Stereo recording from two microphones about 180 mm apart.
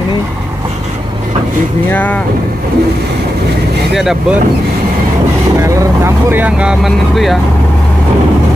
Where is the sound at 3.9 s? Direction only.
Centre (ahead or behind).